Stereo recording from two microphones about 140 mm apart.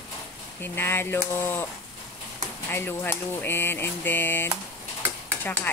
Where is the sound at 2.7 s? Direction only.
15° left (ahead or behind).